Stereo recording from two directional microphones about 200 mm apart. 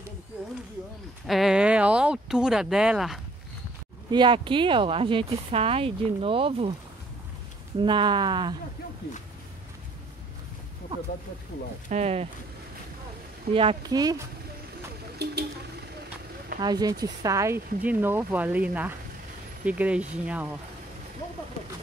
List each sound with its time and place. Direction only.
1.2 s speech: centre (ahead or behind)
4.1 s speech: 25° right (ahead or behind)
7.8 s speech: 25° right (ahead or behind)
11.9 s speech: 30° right (ahead or behind)
13.5 s speech: 30° right (ahead or behind)
15.2 s a sound: 55° right (ahead or behind)
16.5 s speech: 20° right (ahead or behind)